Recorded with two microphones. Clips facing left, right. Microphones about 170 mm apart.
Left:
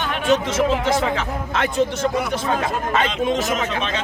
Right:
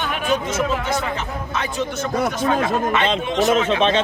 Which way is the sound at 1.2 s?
90° left.